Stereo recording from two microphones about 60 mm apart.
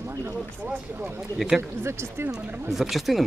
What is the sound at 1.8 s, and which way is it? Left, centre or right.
Speech, right.